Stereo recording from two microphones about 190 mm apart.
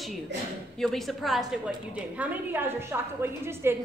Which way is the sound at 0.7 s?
Centre (ahead or behind).